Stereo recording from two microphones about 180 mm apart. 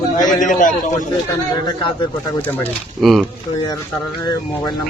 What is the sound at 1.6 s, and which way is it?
Speech, 30° left (ahead or behind).